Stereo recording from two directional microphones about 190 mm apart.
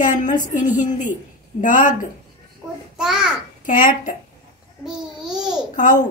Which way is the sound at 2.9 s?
5° right (ahead or behind).